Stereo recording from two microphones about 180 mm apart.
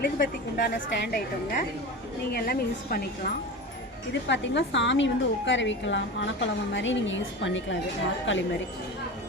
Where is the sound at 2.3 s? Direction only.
60° left (ahead or behind).